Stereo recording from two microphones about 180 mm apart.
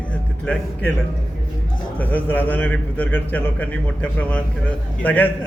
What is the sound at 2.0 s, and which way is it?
A man's voice, 10° left (ahead or behind).